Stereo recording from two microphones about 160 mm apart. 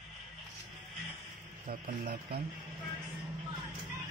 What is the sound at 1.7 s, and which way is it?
Speech, 65° right (ahead or behind).